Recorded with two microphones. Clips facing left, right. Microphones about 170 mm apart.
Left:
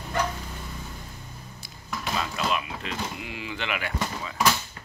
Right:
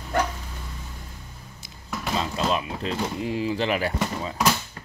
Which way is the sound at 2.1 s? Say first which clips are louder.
Right 3 dB; 25° right (ahead or behind).